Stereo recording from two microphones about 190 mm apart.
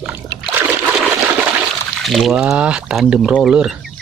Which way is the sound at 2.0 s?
Centre (ahead or behind).